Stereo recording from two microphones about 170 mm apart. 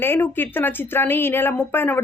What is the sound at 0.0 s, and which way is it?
A woman's voice, 10° left (ahead or behind).